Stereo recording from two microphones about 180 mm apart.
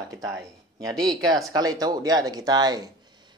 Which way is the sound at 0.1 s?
20° right (ahead or behind).